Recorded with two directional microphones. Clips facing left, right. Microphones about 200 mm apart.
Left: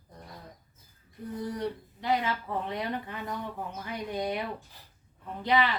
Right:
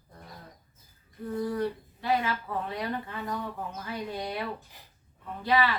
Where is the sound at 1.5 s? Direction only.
20° left (ahead or behind).